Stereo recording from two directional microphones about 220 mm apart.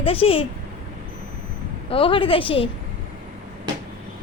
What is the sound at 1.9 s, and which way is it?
Speech, 25° left (ahead or behind).